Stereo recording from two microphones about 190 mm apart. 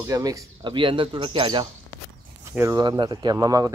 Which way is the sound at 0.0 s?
20° right (ahead or behind).